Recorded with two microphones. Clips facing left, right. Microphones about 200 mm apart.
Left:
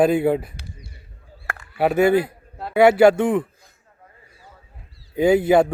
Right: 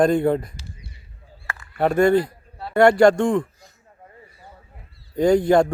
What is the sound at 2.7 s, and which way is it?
Speech, 5° left (ahead or behind).